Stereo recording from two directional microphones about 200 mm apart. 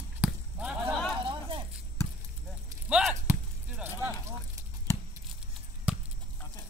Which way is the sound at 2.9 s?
5° right (ahead or behind).